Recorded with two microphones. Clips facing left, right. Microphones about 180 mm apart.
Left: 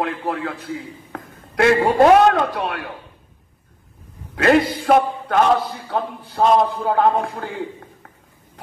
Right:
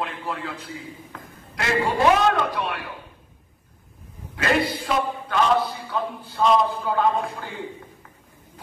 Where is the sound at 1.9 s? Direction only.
50° left (ahead or behind).